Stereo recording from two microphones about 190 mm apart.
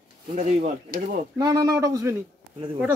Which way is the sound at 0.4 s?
40° right (ahead or behind).